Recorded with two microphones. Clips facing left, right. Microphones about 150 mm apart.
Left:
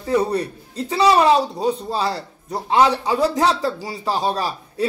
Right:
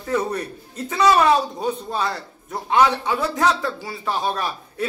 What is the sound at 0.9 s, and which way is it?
A woman's voice, 30° left (ahead or behind).